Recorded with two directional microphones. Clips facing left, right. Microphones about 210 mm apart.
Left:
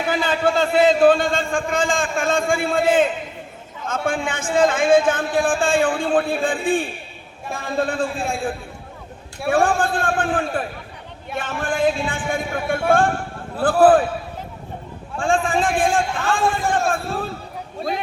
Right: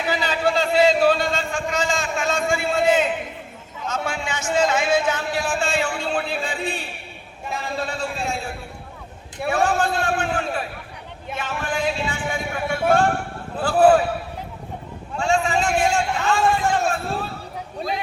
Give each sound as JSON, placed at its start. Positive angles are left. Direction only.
{"t": 0.1, "sound": "a sound", "side_deg": 50}
{"t": 3.8, "sound": "a man's voice", "side_deg": 50}
{"t": 15.2, "sound": "a man's voice", "side_deg": 50}